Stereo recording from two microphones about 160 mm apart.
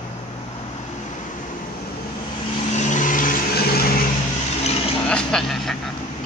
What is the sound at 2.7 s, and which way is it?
Vehicle, 50° left (ahead or behind).